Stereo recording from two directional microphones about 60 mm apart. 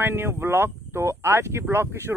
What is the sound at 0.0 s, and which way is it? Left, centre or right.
Speech, right.